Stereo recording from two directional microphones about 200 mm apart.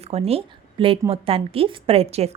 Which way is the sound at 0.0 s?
30° right (ahead or behind).